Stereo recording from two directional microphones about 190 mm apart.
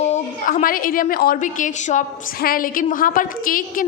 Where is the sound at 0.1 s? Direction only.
40° left (ahead or behind).